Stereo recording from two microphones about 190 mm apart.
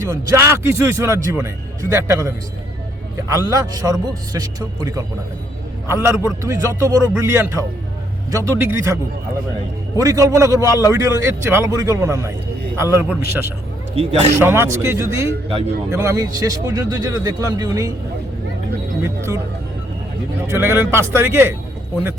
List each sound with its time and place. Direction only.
0.0 s a man's voice: 15° right (ahead or behind)
13.9 s speech: 35° right (ahead or behind)
14.3 s speech: 10° right (ahead or behind)
19.0 s speech: 15° right (ahead or behind)
20.5 s speech: 10° right (ahead or behind)